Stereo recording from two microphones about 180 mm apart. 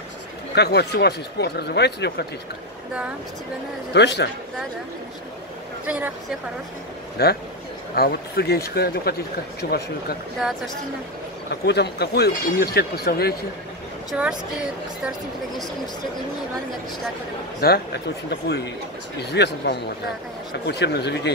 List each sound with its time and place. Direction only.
0.6 s speech: 65° left (ahead or behind)
3.9 s speech: 70° left (ahead or behind)
5.9 s speech: 10° right (ahead or behind)
7.2 s speech: 65° left (ahead or behind)
11.6 s speech: 65° left (ahead or behind)
14.1 s a woman's voice: 5° right (ahead or behind)
17.6 s speech: 60° left (ahead or behind)